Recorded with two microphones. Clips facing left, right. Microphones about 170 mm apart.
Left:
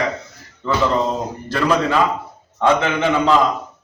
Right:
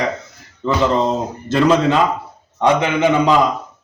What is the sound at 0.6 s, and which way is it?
A man's voice, 25° right (ahead or behind).